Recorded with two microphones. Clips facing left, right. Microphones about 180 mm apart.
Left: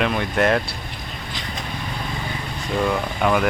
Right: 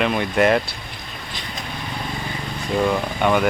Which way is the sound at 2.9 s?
Centre (ahead or behind).